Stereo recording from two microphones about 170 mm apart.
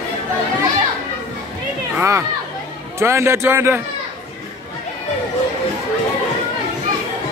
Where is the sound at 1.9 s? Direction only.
15° right (ahead or behind).